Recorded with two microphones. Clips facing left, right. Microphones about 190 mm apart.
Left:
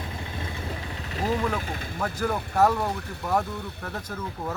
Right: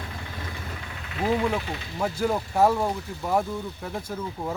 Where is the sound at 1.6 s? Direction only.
50° left (ahead or behind).